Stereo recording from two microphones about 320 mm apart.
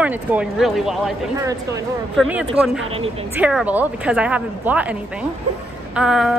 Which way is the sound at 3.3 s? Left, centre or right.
Centre.